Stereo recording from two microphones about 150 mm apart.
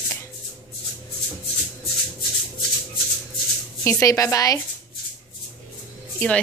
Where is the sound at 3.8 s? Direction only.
20° left (ahead or behind).